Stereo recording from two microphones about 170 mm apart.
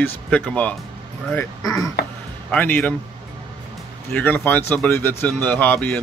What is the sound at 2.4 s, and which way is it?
Speech, 10° left (ahead or behind).